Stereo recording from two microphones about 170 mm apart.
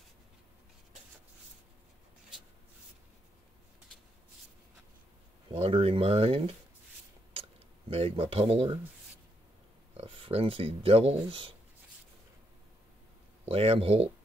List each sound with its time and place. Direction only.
5.6 s speech: 35° right (ahead or behind)
7.9 s speech: 35° right (ahead or behind)
9.9 s speech: 30° right (ahead or behind)
13.5 s speech: 35° right (ahead or behind)